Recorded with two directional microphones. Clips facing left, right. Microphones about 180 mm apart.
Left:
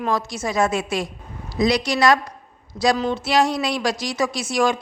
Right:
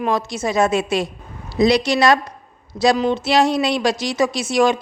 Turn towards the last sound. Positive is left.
turn(degrees=-20)  # may be behind; listen again after turning